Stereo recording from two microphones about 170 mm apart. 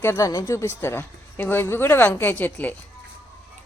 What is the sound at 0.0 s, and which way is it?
A woman's voice, 15° left (ahead or behind).